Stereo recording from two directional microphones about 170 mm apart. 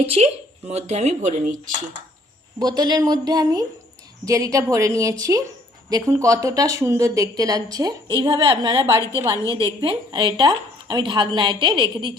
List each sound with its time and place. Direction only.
0.0 s speech: 35° right (ahead or behind)
2.6 s a woman's voice: 25° right (ahead or behind)
8.8 s a woman's voice: 15° right (ahead or behind)
9.8 s a woman's voice: 30° right (ahead or behind)